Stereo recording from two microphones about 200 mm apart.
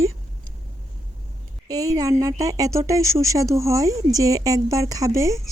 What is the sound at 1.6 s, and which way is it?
Speech, 15° right (ahead or behind).